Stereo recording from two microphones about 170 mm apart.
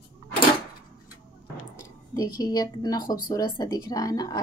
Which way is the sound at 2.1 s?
20° left (ahead or behind).